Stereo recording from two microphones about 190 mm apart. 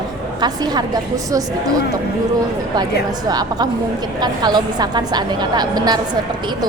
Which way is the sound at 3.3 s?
20° right (ahead or behind).